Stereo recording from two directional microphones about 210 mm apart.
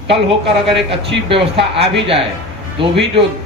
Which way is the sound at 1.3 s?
25° right (ahead or behind).